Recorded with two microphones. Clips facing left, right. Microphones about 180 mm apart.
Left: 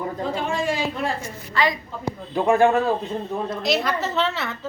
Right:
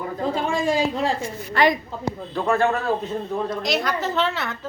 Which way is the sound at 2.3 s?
15° left (ahead or behind).